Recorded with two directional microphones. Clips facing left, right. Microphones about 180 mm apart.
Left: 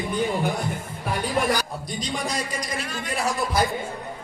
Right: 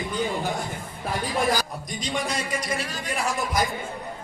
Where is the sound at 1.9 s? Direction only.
35° left (ahead or behind).